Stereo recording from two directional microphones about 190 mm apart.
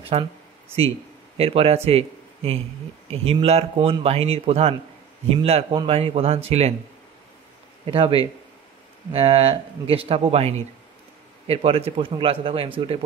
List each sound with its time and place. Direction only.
0.1 s speech: 30° right (ahead or behind)
1.4 s a man's voice: 30° right (ahead or behind)
7.8 s speech: 25° right (ahead or behind)
9.1 s a man's voice: 30° right (ahead or behind)